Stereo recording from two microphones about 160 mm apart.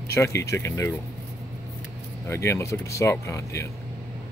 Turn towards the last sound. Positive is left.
turn(degrees=20)  # may be behind; listen again after turning